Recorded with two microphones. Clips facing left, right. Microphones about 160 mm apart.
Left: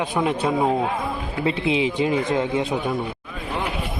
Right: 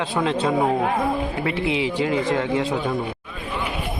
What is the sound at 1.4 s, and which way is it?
A man's voice, 20° left (ahead or behind).